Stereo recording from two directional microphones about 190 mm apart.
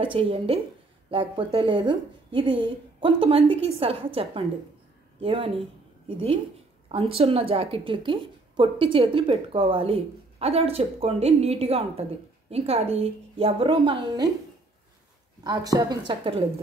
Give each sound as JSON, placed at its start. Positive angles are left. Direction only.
{"t": 0.0, "sound": "a woman's voice", "side_deg": -30}
{"t": 15.4, "sound": "a woman's voice", "side_deg": -20}